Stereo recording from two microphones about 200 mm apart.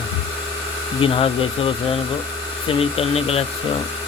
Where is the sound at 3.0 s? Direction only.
30° left (ahead or behind).